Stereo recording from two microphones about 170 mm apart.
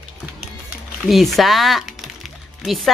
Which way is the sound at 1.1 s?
Centre (ahead or behind).